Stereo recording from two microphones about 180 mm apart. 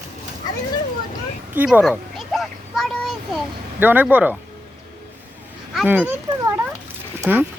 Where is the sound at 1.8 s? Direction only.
Centre (ahead or behind).